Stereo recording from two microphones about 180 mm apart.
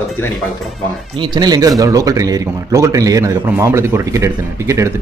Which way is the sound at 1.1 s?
25° right (ahead or behind).